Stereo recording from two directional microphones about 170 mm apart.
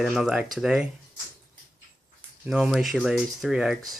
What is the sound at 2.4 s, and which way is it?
Speech, 5° right (ahead or behind).